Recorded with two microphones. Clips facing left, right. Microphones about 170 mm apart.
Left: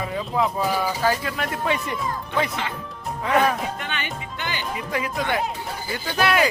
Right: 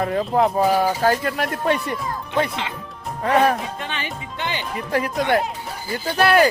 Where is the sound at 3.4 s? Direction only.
30° right (ahead or behind).